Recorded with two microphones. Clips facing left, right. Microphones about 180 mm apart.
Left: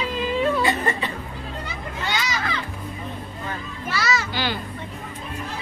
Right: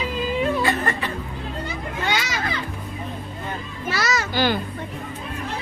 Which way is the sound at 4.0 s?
45° right (ahead or behind).